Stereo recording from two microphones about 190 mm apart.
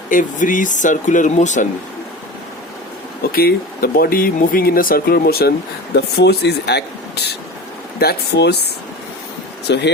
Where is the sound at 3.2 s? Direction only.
55° left (ahead or behind).